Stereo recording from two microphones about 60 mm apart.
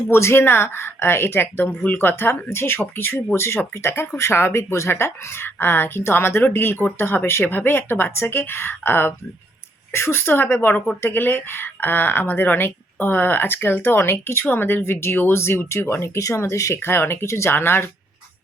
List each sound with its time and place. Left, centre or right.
0.1 s speech: left
16.8 s speech: left